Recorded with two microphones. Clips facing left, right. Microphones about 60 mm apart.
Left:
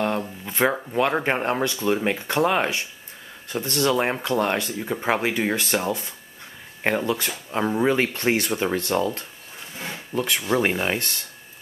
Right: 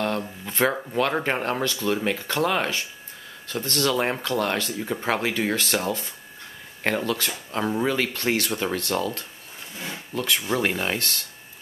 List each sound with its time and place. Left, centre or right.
0.0 s speech: centre
4.6 s speech: centre
7.8 s speech: left